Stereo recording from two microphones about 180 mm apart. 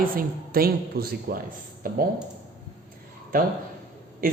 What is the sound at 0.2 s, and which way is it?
A woman's voice, 55° right (ahead or behind).